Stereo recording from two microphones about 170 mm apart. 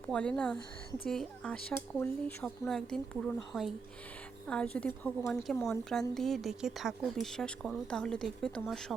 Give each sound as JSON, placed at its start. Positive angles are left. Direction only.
{"t": 0.1, "sound": "a woman's voice", "side_deg": 5}